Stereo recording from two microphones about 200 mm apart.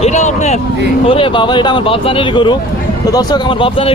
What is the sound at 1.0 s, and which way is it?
Speech, 25° left (ahead or behind).